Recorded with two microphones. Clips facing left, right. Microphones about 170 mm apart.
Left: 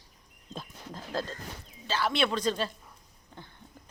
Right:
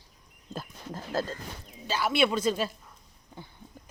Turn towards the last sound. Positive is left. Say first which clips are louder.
# right 2 dB
turn(degrees=-10)  # may be behind; listen again after turning